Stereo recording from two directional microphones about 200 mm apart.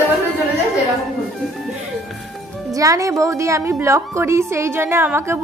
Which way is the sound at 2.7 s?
15° right (ahead or behind).